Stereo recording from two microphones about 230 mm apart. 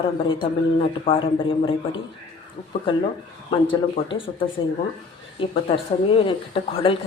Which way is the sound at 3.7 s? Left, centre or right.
Left.